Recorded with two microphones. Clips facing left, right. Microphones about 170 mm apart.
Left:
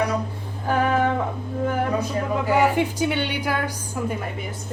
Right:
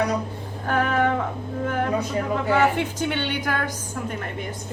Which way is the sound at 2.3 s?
10° left (ahead or behind).